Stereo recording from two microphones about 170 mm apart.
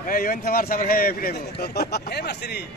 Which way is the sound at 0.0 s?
55° left (ahead or behind).